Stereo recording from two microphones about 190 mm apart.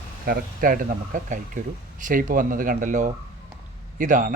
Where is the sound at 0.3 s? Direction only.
45° right (ahead or behind).